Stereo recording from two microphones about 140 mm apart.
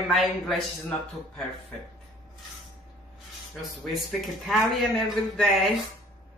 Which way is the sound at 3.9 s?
Centre (ahead or behind).